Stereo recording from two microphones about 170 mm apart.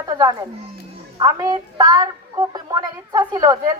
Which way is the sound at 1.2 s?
20° right (ahead or behind).